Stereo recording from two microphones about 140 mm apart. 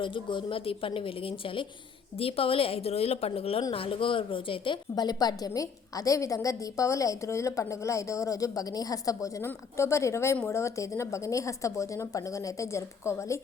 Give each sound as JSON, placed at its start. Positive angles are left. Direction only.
{"t": 0.0, "sound": "a woman's voice", "side_deg": 35}